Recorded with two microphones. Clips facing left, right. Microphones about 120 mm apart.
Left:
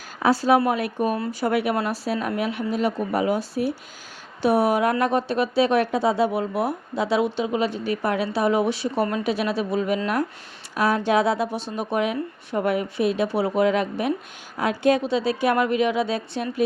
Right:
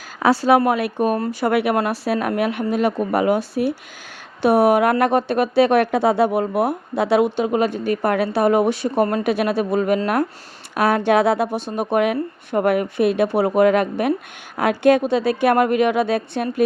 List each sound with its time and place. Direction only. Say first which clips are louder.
0.2 s a woman's voice: right 3 dB; 70° right (ahead or behind); by 16.6 s 55° right (ahead or behind)